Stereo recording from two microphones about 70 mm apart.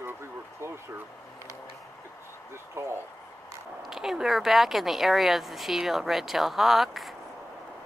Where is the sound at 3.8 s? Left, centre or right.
Centre.